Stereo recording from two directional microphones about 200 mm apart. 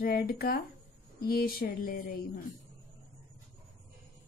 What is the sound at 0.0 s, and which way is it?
Speech, 50° left (ahead or behind).